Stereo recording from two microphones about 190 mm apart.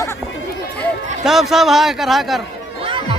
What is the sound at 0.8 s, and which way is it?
A man's voice, centre (ahead or behind).